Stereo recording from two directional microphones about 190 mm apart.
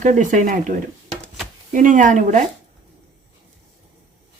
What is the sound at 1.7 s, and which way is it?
Speech, 45° right (ahead or behind).